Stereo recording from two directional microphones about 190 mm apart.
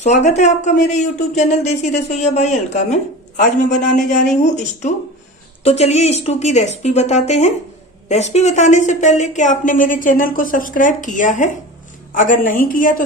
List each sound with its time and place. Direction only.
0.0 s speech: 35° left (ahead or behind)
5.6 s speech: 35° left (ahead or behind)